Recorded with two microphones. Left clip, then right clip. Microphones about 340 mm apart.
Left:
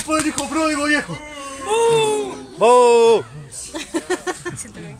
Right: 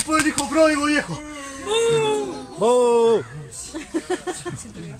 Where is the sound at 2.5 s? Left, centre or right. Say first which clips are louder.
Left 5 dB; left.